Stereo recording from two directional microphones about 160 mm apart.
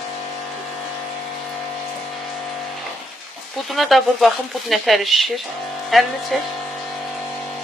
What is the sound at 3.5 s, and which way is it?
Speech, centre (ahead or behind).